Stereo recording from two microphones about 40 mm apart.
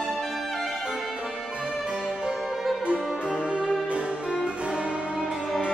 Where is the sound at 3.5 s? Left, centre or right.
Right.